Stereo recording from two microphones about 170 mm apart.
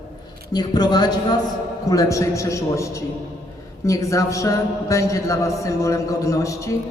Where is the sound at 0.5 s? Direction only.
25° left (ahead or behind).